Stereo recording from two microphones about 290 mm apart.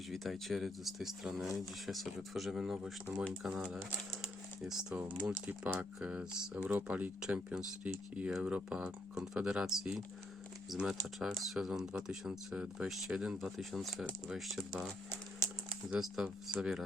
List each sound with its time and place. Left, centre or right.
0.1 s speech: centre
15.9 s speech: centre